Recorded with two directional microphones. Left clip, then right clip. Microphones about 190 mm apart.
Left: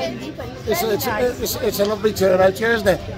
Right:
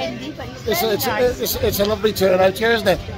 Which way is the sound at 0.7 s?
30° right (ahead or behind).